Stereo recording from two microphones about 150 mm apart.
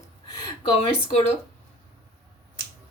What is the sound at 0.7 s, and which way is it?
Speech, 45° left (ahead or behind).